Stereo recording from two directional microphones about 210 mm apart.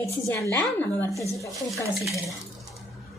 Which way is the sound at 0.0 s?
15° left (ahead or behind).